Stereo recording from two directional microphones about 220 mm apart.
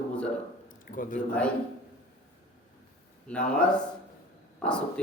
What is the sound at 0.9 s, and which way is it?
Speech, 35° left (ahead or behind).